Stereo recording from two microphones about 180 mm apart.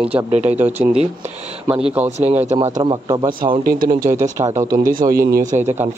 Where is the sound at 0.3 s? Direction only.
40° right (ahead or behind).